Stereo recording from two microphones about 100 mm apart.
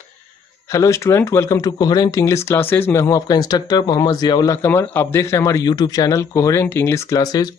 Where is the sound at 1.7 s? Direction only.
40° left (ahead or behind).